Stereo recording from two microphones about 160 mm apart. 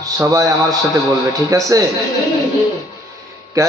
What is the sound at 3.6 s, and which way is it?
Speech, 20° right (ahead or behind).